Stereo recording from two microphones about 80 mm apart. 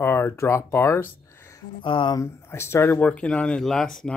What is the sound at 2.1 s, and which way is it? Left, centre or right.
Speech, left.